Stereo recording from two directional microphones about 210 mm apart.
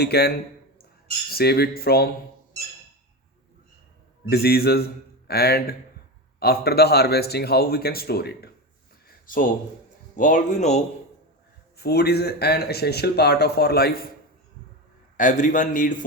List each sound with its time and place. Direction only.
0.0 s speech: 50° left (ahead or behind)
4.3 s speech: 50° left (ahead or behind)
9.0 s a sound: 40° left (ahead or behind)
10.2 s a man's voice: 35° left (ahead or behind)
11.8 s speech: 50° left (ahead or behind)
15.2 s a man's voice: 35° left (ahead or behind)